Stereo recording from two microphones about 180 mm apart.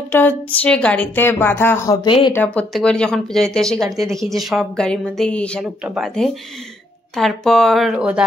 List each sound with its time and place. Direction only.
0.1 s a woman's voice: 10° left (ahead or behind)
2.0 s speech: 25° left (ahead or behind)
2.3 s speech: 5° left (ahead or behind)